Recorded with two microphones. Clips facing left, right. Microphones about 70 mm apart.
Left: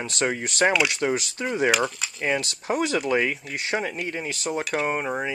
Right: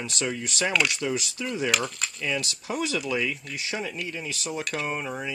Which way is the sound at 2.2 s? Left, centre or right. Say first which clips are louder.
Left 5 dB; left.